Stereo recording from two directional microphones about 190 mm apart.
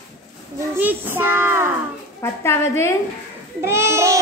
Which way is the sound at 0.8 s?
10° right (ahead or behind).